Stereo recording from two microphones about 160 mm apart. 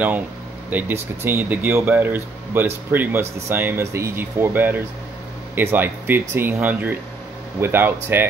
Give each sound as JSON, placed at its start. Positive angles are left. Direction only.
{"t": 0.7, "sound": "speech", "side_deg": -10}